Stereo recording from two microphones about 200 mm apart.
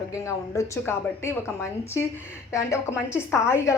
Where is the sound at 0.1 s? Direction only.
15° left (ahead or behind).